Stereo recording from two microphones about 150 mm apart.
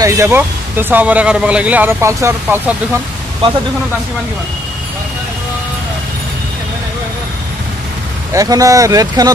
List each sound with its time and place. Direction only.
0.0 s speech: 20° right (ahead or behind)
8.3 s speech: 25° right (ahead or behind)